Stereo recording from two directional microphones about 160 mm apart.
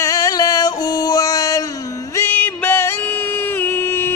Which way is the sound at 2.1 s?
10° left (ahead or behind).